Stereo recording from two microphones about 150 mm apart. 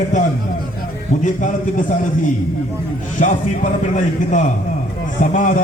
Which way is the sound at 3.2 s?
55° left (ahead or behind).